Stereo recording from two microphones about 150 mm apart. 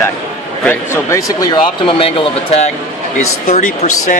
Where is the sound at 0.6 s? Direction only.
20° left (ahead or behind).